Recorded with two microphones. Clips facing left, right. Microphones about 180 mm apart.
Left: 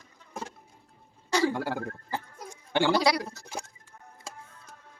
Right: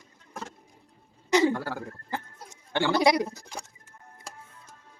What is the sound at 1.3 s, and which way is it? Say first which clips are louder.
Throat clearing: right 4 dB; 20° right (ahead or behind).